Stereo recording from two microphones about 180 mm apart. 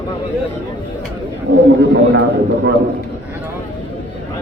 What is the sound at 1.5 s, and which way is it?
Speech, 65° right (ahead or behind).